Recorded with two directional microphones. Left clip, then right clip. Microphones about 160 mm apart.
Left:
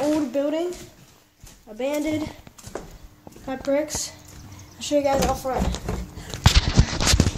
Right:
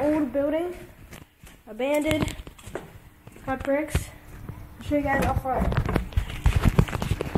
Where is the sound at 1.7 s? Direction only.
20° right (ahead or behind).